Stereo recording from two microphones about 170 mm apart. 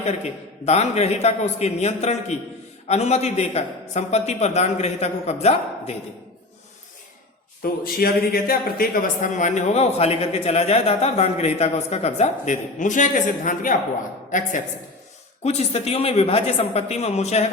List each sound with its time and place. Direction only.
0.6 s a man's voice: 40° left (ahead or behind)
7.6 s a man's voice: 60° left (ahead or behind); by 17.5 s 40° left (ahead or behind)